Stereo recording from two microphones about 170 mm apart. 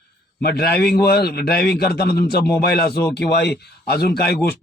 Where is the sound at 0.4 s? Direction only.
65° left (ahead or behind).